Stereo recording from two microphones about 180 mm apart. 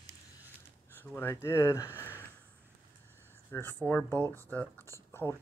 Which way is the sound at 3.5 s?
10° left (ahead or behind).